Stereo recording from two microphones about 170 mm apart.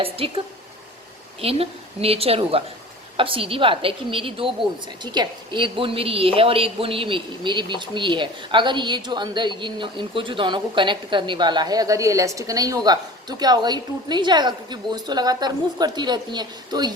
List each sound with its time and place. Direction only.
0.0 s a woman's voice: 35° right (ahead or behind)